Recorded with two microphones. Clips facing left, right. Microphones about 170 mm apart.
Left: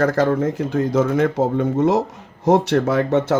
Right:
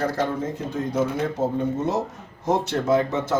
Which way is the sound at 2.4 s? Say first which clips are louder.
Left 6 dB; 70° left (ahead or behind).